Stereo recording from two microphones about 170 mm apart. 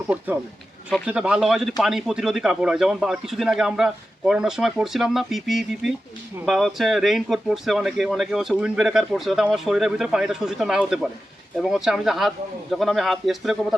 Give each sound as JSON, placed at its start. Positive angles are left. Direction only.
{"t": 1.0, "sound": "speech", "side_deg": -5}